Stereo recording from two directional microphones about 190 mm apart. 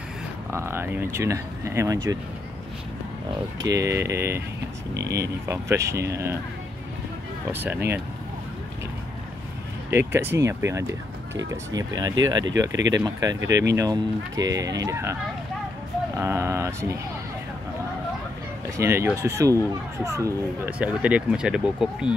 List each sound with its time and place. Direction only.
0.5 s a child's voice: 15° right (ahead or behind)
3.6 s a child's voice: 15° right (ahead or behind)
4.9 s speech: 60° right (ahead or behind)
5.2 s a child's voice: 15° right (ahead or behind)
7.5 s a child's voice: 10° right (ahead or behind)
9.8 s a child's voice: 10° right (ahead or behind)
16.2 s a child's voice: 15° right (ahead or behind)
18.8 s a child's voice: 15° right (ahead or behind)